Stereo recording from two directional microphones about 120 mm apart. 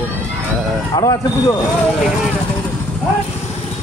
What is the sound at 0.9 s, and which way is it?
Speech, 30° left (ahead or behind).